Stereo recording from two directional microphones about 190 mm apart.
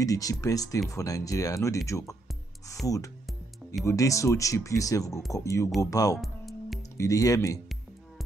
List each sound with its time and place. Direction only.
0.0 s speech: 20° left (ahead or behind)
3.8 s speech: 15° left (ahead or behind)
6.1 s music: centre (ahead or behind)
7.0 s speech: 15° left (ahead or behind)